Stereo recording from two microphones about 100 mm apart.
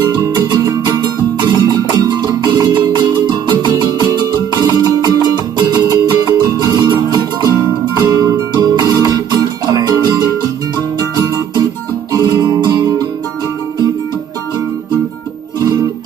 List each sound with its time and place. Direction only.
0.0 s music: 40° right (ahead or behind)